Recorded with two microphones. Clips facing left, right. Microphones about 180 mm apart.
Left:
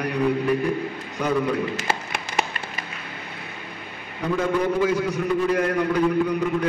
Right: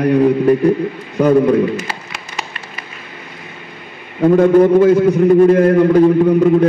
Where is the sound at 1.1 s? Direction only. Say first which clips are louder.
Right 12 dB; 55° right (ahead or behind).